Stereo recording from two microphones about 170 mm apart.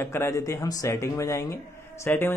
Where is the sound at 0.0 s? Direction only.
15° left (ahead or behind).